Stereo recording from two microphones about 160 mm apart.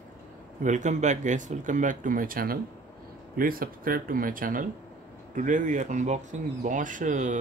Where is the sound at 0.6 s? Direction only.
50° right (ahead or behind).